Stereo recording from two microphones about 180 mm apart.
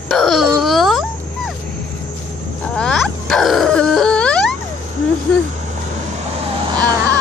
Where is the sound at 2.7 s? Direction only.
5° left (ahead or behind).